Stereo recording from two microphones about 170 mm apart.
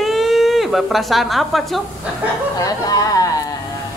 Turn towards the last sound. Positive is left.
turn(degrees=20)  # may be behind; listen again after turning